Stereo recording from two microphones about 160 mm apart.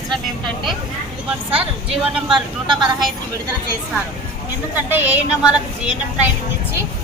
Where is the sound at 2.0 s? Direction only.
5° right (ahead or behind).